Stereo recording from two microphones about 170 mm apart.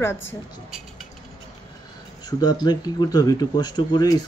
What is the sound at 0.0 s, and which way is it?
Speech, 15° left (ahead or behind).